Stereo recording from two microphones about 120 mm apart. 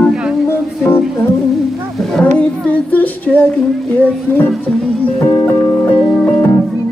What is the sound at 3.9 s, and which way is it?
Music, 15° left (ahead or behind).